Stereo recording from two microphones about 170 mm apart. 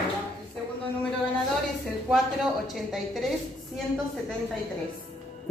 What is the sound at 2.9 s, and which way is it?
Speech, centre (ahead or behind).